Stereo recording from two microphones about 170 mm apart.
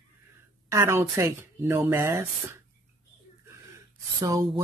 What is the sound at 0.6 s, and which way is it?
A woman's voice, 15° right (ahead or behind).